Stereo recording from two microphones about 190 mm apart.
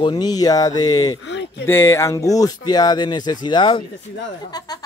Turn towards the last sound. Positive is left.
turn(degrees=20)  # may be behind; listen again after turning